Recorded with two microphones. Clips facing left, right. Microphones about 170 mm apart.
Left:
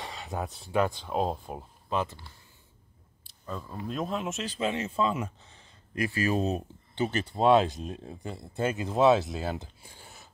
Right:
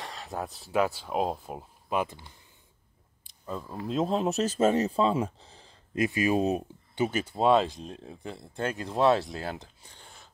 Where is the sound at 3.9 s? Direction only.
30° right (ahead or behind).